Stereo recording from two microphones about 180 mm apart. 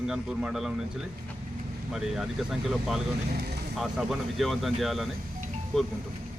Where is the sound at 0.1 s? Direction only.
5° right (ahead or behind).